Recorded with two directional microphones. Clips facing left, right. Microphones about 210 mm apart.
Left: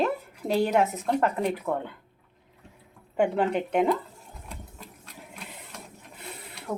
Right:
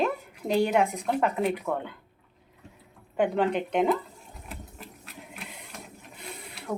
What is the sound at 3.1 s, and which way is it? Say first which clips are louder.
Speech: left 1 dB; 5° left (ahead or behind).